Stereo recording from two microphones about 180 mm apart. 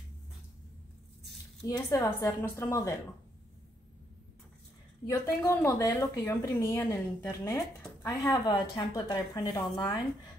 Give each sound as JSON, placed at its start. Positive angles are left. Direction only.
{"t": 1.7, "sound": "a woman's voice", "side_deg": 20}
{"t": 5.2, "sound": "a woman's voice", "side_deg": 15}